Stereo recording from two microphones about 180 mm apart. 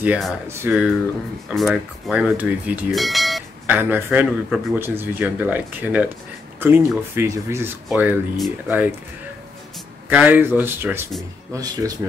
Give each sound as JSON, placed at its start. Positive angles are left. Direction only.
{"t": 0.0, "sound": "speech", "side_deg": -5}
{"t": 1.5, "sound": "bell", "side_deg": 0}
{"t": 4.7, "sound": "speech", "side_deg": -10}
{"t": 10.0, "sound": "speech", "side_deg": -10}